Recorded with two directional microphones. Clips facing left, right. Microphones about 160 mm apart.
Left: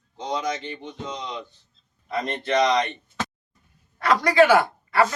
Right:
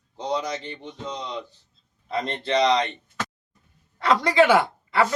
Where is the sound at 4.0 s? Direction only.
25° right (ahead or behind).